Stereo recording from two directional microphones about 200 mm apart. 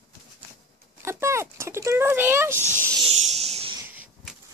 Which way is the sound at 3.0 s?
30° right (ahead or behind).